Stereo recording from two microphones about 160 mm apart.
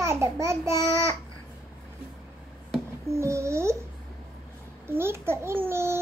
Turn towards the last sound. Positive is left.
turn(degrees=-15)  # may be behind; listen again after turning